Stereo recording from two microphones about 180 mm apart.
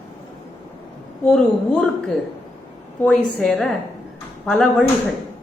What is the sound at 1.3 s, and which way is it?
Speech, 5° left (ahead or behind).